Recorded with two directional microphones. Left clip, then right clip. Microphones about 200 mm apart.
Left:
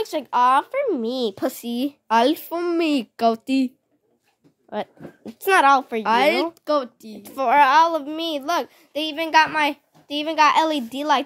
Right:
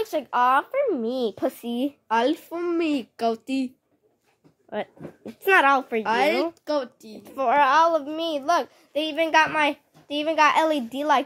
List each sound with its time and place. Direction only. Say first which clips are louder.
0.0 s speech: left 3 dB; 15° left (ahead or behind)
2.0 s a woman's voice: left 5 dB; 60° left (ahead or behind)
4.6 s a child's voice: left 2 dB; 15° left (ahead or behind)
6.0 s a child's voice: left 4 dB; 50° left (ahead or behind)
7.2 s a child's voice: left 3 dB; 20° left (ahead or behind)